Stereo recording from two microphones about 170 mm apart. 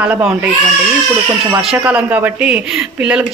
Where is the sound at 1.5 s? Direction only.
5° right (ahead or behind).